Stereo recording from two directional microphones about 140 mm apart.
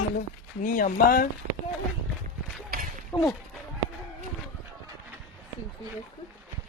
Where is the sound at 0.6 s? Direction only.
85° left.